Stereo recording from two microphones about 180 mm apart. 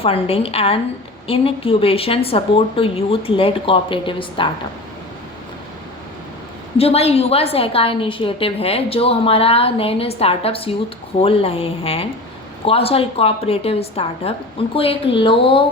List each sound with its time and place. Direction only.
0.0 s a woman's voice: 30° left (ahead or behind)
6.7 s a woman's voice: 35° left (ahead or behind)